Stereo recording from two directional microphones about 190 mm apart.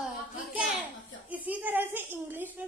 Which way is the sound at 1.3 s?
10° right (ahead or behind).